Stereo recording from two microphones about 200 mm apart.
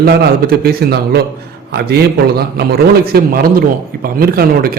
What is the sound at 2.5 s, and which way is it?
Speech, 50° right (ahead or behind).